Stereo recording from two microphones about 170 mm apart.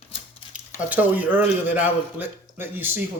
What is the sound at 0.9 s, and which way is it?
A man's voice, 10° right (ahead or behind).